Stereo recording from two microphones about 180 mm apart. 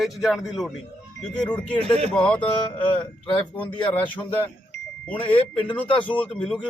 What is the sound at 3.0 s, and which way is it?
Speech, 25° left (ahead or behind).